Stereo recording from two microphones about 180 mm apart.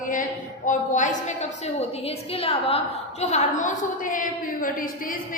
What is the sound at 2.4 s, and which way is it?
A woman's voice, 30° left (ahead or behind).